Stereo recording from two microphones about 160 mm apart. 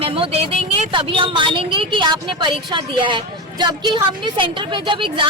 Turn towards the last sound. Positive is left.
turn(degrees=-30)  # may be behind; listen again after turning